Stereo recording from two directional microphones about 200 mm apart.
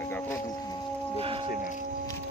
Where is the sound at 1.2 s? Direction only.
30° right (ahead or behind).